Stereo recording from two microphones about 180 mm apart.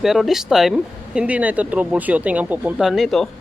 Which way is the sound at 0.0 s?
Centre (ahead or behind).